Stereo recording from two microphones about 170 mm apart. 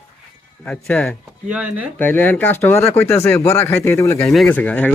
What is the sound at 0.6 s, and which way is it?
Speech, 5° left (ahead or behind).